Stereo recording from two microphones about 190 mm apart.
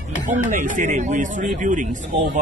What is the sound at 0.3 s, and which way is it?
Speech, 45° right (ahead or behind).